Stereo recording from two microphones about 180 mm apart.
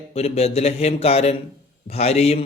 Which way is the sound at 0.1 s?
35° left (ahead or behind).